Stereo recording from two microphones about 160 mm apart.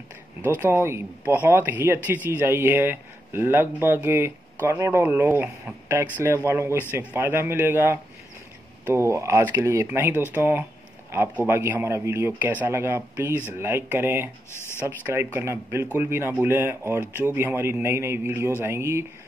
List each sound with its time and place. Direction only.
0.6 s speech: 15° right (ahead or behind)
14.5 s speech: 15° left (ahead or behind)
14.9 s speech: 10° right (ahead or behind)